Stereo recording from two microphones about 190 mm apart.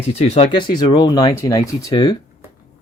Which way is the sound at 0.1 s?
35° left (ahead or behind).